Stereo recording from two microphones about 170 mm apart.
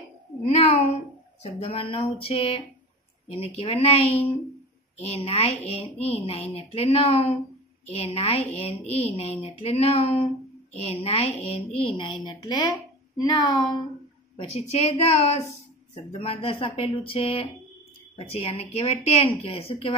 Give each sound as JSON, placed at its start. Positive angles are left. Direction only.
{"t": 0.5, "sound": "speech", "side_deg": 40}
{"t": 14.3, "sound": "speech", "side_deg": 40}